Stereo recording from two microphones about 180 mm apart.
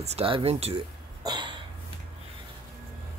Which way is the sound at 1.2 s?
25° right (ahead or behind).